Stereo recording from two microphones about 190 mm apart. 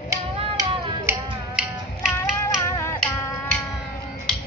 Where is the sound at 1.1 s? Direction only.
5° right (ahead or behind).